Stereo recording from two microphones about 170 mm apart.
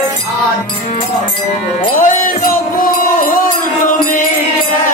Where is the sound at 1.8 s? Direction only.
50° left (ahead or behind).